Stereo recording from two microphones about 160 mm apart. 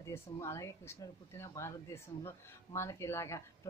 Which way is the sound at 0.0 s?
15° left (ahead or behind).